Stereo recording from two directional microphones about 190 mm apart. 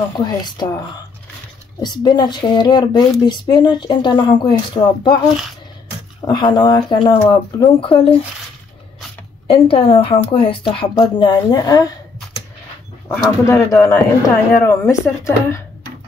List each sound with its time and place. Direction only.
0.6 s a woman's voice: 20° left (ahead or behind)
6.2 s a woman's voice: 25° left (ahead or behind)
9.5 s a woman's voice: 30° left (ahead or behind)
13.1 s speech: 15° left (ahead or behind)